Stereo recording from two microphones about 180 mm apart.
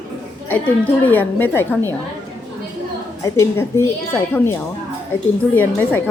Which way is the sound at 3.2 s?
15° left (ahead or behind).